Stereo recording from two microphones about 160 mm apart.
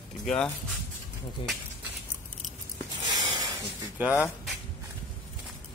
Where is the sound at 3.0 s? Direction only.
25° right (ahead or behind).